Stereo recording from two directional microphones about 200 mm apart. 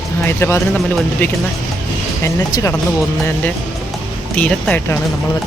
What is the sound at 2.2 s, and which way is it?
Speech, 15° left (ahead or behind).